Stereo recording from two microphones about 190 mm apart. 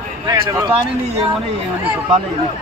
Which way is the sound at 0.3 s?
15° right (ahead or behind).